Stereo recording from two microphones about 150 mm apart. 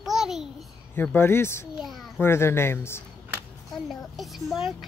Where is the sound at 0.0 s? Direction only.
Centre (ahead or behind).